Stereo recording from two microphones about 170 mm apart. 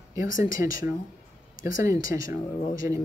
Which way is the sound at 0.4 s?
55° left (ahead or behind).